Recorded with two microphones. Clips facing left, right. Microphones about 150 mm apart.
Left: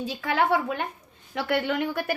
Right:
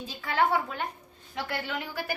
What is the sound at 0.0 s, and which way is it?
A woman's voice, 85° left.